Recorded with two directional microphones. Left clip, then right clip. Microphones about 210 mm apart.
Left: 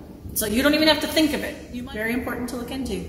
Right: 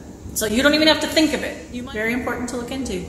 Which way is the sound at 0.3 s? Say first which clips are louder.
Right 3 dB; 10° right (ahead or behind).